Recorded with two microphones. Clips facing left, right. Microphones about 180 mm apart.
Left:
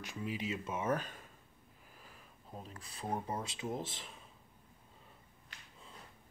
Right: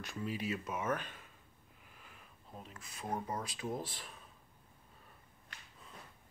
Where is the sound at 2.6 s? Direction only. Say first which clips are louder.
Left 2 dB; 35° left (ahead or behind).